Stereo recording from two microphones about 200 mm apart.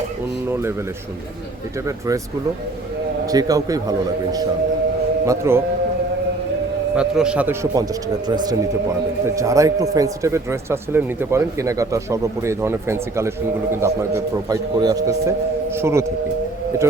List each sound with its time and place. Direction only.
3.2 s a man's voice: 20° right (ahead or behind)
6.9 s a man's voice: 5° right (ahead or behind)